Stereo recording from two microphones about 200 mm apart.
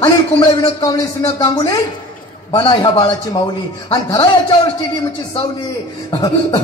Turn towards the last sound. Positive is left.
turn(degrees=20)  # may be behind; listen again after turning